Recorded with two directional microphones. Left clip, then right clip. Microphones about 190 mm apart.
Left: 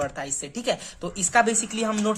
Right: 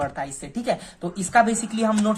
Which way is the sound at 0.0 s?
20° left (ahead or behind).